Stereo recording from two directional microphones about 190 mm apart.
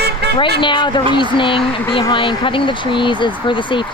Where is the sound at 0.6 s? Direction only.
25° left (ahead or behind).